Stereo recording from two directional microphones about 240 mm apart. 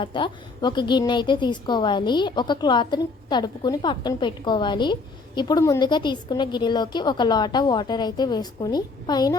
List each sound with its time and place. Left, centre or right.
0.0 s a woman's voice: centre